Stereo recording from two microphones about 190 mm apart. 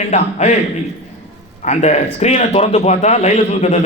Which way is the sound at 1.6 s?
35° left (ahead or behind).